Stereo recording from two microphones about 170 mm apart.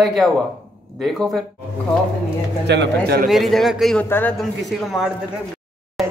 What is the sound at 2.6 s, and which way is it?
Speech, 90° right.